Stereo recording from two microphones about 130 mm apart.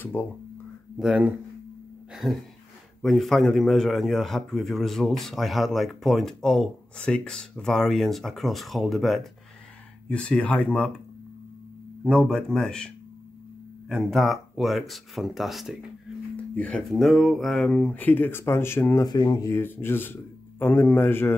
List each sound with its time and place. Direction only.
0.0 s speech: 15° left (ahead or behind)
0.9 s a man's voice: 5° right (ahead or behind)
12.0 s a man's voice: 5° left (ahead or behind)
16.5 s speech: 10° left (ahead or behind)
16.9 s speech: centre (ahead or behind); by 19.0 s 15° left (ahead or behind)
19.0 s speech: 35° left (ahead or behind)
19.5 s speech: 15° left (ahead or behind)